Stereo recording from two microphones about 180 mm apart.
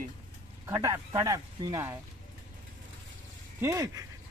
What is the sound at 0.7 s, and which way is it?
Speech, 20° right (ahead or behind).